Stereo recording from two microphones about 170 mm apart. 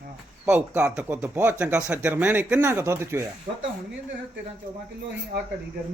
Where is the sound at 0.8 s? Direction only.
10° right (ahead or behind).